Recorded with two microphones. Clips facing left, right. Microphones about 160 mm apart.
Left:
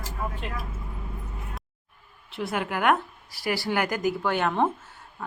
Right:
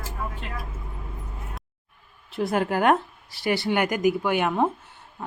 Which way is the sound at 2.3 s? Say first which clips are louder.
Right 5 dB; 40° right (ahead or behind).